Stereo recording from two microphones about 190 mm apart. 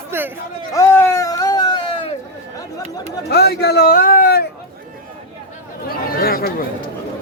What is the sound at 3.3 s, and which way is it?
A man's voice, 60° left (ahead or behind).